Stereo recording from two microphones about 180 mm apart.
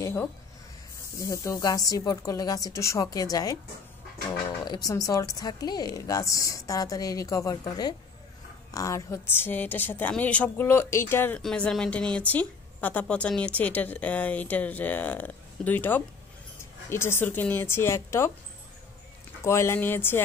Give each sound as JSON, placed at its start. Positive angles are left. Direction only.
{"t": 0.0, "sound": "a woman's voice", "side_deg": 10}
{"t": 4.6, "sound": "a woman's voice", "side_deg": 20}
{"t": 19.4, "sound": "a woman's voice", "side_deg": 15}